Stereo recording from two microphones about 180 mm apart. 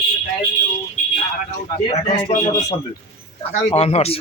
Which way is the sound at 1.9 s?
40° left (ahead or behind).